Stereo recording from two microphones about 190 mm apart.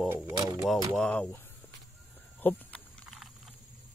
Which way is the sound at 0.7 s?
5° left (ahead or behind).